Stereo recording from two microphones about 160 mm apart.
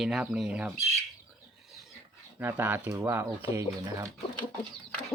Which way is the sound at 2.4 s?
10° right (ahead or behind).